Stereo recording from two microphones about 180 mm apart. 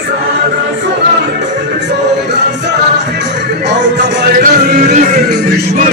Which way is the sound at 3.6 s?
75° right (ahead or behind).